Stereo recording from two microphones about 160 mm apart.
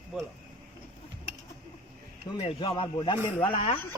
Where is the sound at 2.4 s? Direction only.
30° left (ahead or behind).